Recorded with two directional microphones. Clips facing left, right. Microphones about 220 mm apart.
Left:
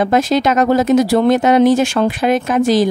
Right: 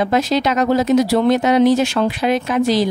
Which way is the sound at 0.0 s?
50° left (ahead or behind).